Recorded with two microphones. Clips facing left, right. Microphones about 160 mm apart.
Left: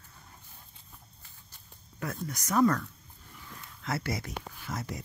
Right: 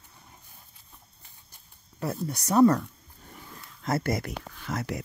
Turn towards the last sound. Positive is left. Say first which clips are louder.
# right 5 dB
turn(degrees=-70)  # may be behind; listen again after turning